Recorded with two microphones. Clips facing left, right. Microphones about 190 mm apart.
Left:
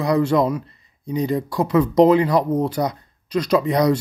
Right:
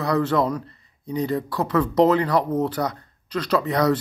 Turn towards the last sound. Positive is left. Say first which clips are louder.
# left 3 dB
turn(degrees=15)  # may be behind; listen again after turning